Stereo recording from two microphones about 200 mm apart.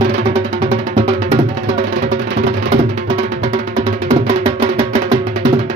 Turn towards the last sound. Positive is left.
turn(degrees=-30)  # may be behind; listen again after turning